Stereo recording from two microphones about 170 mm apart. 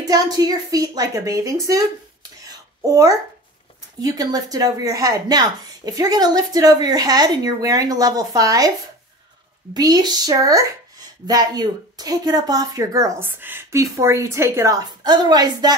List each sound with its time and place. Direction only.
0.0 s speech: 20° right (ahead or behind)
2.4 s whispering: 20° right (ahead or behind)
4.0 s speech: 20° right (ahead or behind)
9.8 s speech: 20° right (ahead or behind)